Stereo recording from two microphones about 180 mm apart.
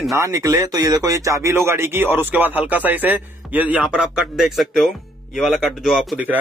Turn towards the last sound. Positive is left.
turn(degrees=-5)  # may be behind; listen again after turning